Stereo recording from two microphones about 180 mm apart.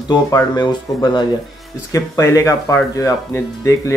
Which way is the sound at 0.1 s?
20° left (ahead or behind).